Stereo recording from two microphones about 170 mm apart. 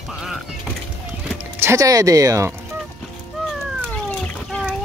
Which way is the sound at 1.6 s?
15° right (ahead or behind).